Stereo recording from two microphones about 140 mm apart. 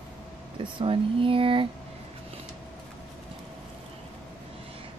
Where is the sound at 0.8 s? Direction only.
40° right (ahead or behind).